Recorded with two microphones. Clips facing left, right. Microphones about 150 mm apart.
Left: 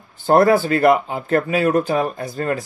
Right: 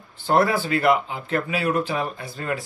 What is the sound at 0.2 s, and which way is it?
Speech, 45° left (ahead or behind).